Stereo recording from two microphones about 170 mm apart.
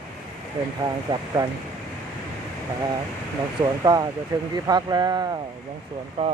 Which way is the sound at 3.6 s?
25° right (ahead or behind).